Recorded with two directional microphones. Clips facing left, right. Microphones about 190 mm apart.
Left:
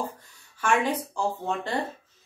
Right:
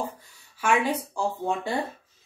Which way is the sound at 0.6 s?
10° right (ahead or behind).